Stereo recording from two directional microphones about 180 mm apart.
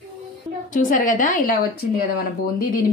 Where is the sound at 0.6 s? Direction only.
45° left (ahead or behind).